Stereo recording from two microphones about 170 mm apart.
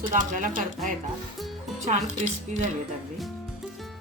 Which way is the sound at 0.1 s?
50° right (ahead or behind).